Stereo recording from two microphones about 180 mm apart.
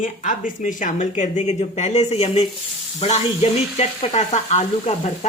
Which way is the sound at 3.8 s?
35° left (ahead or behind).